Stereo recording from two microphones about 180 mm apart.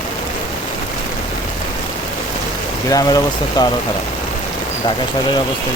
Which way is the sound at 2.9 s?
20° left (ahead or behind).